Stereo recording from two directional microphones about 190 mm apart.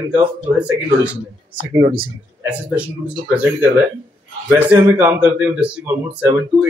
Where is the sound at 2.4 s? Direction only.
5° right (ahead or behind).